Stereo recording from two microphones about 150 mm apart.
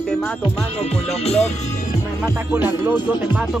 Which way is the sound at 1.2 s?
45° left (ahead or behind).